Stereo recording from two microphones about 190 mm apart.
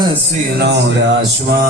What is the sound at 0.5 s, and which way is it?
Speech, 60° right (ahead or behind).